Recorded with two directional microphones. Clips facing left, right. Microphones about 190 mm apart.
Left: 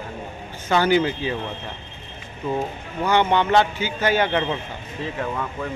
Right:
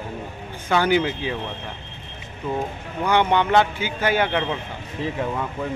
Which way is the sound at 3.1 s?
15° right (ahead or behind).